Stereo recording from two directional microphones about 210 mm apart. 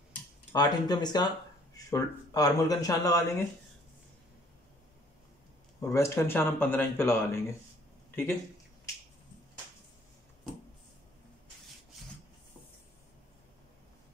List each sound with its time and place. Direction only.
0.5 s speech: 20° left (ahead or behind)
5.8 s speech: 15° left (ahead or behind)